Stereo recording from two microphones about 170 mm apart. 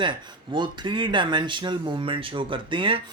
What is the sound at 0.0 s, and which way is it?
Speech, 30° right (ahead or behind).